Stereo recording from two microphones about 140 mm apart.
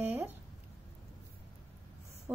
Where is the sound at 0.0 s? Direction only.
15° right (ahead or behind).